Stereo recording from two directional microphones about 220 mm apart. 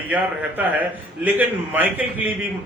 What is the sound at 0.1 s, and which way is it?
A man's voice, 5° right (ahead or behind).